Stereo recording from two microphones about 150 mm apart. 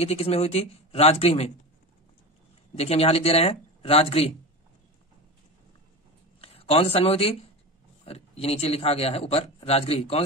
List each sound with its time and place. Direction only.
0.0 s speech: 40° left (ahead or behind)
2.8 s speech: 40° left (ahead or behind)
6.4 s speech: 40° left (ahead or behind)